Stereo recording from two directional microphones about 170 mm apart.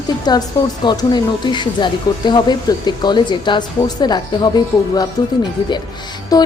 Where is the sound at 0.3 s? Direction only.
25° left (ahead or behind).